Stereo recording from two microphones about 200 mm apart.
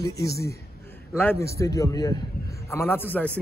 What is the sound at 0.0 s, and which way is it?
A man's voice, 15° left (ahead or behind).